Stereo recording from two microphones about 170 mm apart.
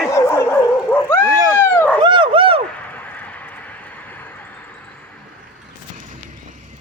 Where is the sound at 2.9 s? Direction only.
10° left (ahead or behind).